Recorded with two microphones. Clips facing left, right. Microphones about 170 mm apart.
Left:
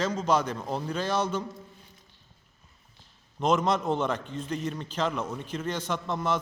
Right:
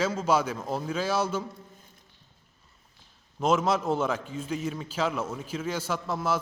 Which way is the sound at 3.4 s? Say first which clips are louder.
Even; 5° right (ahead or behind).